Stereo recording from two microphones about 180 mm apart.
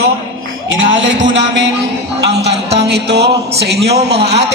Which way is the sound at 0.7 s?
90° right.